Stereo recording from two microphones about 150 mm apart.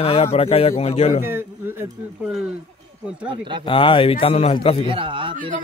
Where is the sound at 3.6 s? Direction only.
35° left (ahead or behind).